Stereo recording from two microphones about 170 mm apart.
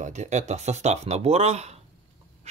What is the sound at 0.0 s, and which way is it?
Speech, 45° right (ahead or behind).